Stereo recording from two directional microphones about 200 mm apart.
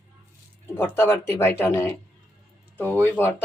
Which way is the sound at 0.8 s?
10° left (ahead or behind).